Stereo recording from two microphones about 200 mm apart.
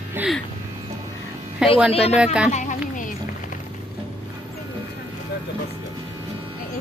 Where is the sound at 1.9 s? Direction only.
30° left (ahead or behind).